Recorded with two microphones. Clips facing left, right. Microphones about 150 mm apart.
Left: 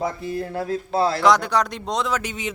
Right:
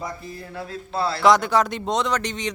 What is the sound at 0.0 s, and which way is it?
Speech, 70° left (ahead or behind).